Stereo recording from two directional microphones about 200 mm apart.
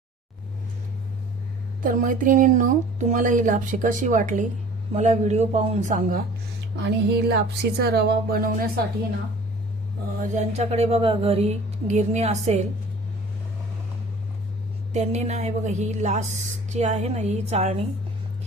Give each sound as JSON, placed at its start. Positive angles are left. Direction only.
{"t": 1.8, "sound": "speech", "side_deg": -45}
{"t": 6.8, "sound": "speech", "side_deg": -55}
{"t": 10.2, "sound": "speech", "side_deg": -35}
{"t": 14.9, "sound": "speech", "side_deg": -35}